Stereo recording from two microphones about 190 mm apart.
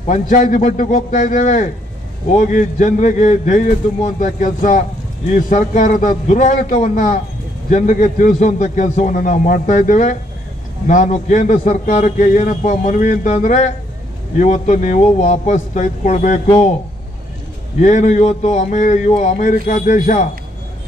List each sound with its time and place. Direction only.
0.0 s a man's voice: 40° left (ahead or behind)
17.7 s a man's voice: 40° left (ahead or behind)